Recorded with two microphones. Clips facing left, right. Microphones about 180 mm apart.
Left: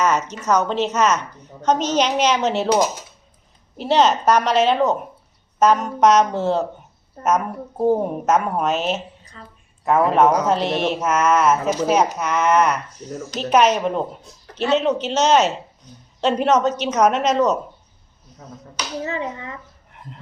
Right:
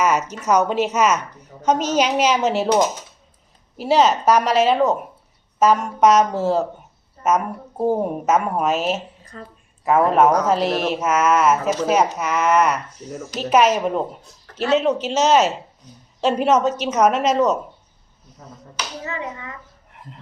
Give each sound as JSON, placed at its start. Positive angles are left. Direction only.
{"t": 0.0, "sound": "a woman's voice", "side_deg": -10}
{"t": 9.3, "sound": "a woman's voice", "side_deg": -45}
{"t": 9.8, "sound": "speech", "side_deg": 0}
{"t": 19.0, "sound": "speech", "side_deg": 30}
{"t": 19.9, "sound": "a sound", "side_deg": 0}